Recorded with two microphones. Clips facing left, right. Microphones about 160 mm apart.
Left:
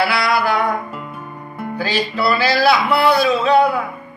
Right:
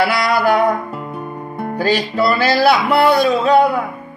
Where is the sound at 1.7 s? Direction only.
45° right (ahead or behind).